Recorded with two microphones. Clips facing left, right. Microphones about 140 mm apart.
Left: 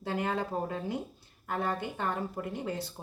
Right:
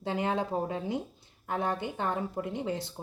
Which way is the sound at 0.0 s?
20° right (ahead or behind).